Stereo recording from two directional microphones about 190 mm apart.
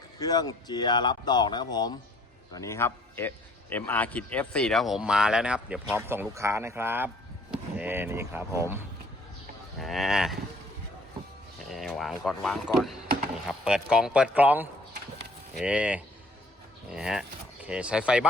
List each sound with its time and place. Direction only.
0.2 s a man's voice: 20° left (ahead or behind); by 8.8 s 15° right (ahead or behind)
9.7 s a man's voice: centre (ahead or behind)
11.7 s a man's voice: centre (ahead or behind)